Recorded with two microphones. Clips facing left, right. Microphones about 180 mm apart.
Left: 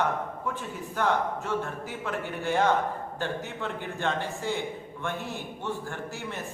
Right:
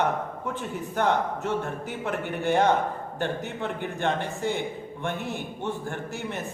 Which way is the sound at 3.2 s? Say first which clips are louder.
Right 4 dB; 60° right (ahead or behind).